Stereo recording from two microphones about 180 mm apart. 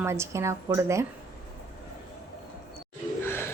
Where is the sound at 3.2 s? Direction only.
10° left (ahead or behind).